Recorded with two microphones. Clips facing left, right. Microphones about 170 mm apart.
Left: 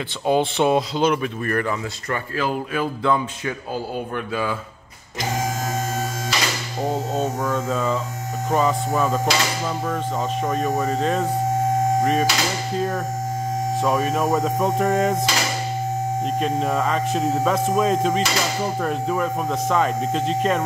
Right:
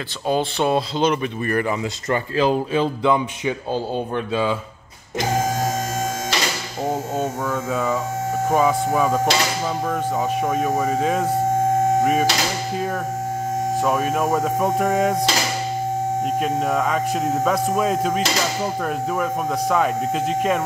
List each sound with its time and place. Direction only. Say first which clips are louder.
0.3 s speech: left 2 dB; 20° left (ahead or behind); by 1.7 s 5° right (ahead or behind)
1.7 s speech: right 3 dB; 25° right (ahead or behind)
7.2 s speech: left 1 dB; 10° right (ahead or behind)
10.4 s speech: even; 5° right (ahead or behind)
12.0 s a sound: right 1 dB; 5° right (ahead or behind)
12.7 s speech: even; 5° right (ahead or behind)
16.3 s speech: even; 5° right (ahead or behind)